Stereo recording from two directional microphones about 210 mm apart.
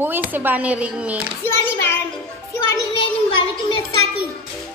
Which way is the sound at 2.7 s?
20° left (ahead or behind).